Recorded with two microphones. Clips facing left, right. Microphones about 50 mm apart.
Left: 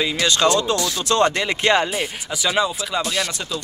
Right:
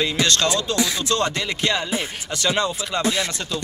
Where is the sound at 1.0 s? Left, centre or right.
Left.